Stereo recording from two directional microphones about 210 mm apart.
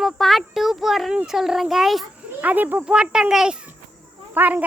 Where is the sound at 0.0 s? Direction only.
Centre (ahead or behind).